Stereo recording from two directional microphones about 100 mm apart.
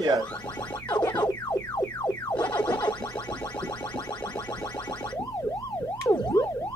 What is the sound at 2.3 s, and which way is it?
Music, 15° left (ahead or behind).